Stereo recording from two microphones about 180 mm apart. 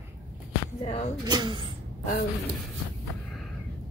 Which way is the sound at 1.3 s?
25° right (ahead or behind).